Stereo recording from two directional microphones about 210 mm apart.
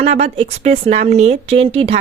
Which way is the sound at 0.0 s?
30° right (ahead or behind).